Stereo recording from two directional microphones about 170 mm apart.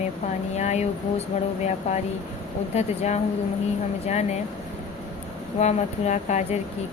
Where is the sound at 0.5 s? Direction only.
40° left (ahead or behind).